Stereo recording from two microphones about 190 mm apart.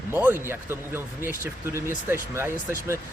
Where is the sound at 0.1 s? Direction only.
10° right (ahead or behind).